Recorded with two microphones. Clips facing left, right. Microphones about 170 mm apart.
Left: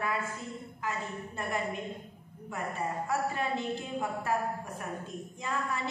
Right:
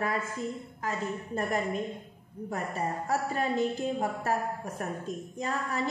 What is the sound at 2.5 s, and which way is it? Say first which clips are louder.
A woman's voice: right 2 dB; 40° right (ahead or behind).